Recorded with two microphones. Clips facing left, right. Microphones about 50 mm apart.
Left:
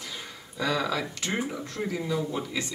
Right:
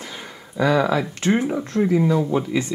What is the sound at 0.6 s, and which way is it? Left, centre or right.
Speech, right.